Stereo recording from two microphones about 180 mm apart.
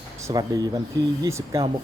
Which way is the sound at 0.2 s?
15° right (ahead or behind).